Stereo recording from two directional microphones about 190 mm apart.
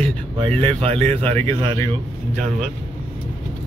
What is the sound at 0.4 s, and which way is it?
Speech, 25° right (ahead or behind).